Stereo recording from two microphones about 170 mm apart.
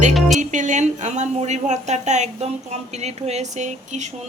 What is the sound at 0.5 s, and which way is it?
A woman's voice, 45° right (ahead or behind).